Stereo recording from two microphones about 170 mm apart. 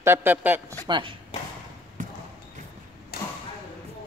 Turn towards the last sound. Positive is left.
turn(degrees=65)  # may be behind; listen again after turning